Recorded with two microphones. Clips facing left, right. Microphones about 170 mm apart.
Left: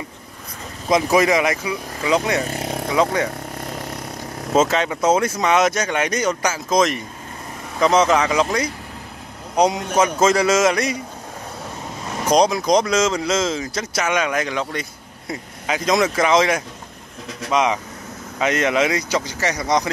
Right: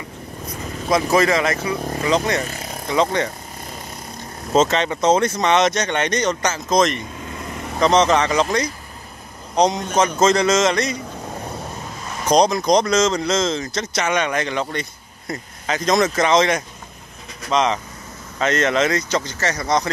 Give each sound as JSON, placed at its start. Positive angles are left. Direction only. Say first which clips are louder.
{"t": 0.8, "sound": "speech", "louder": "left 1 dB", "side_deg": 15}
{"t": 2.6, "sound": "a sound", "louder": "left 6 dB", "side_deg": 70}
{"t": 2.9, "sound": "speech", "louder": "even", "side_deg": 5}
{"t": 3.7, "sound": "vehicle", "louder": "left 5 dB", "side_deg": 70}
{"t": 4.6, "sound": "speech", "louder": "right 1 dB", "side_deg": 10}
{"t": 12.3, "sound": "speech", "louder": "right 1 dB", "side_deg": 5}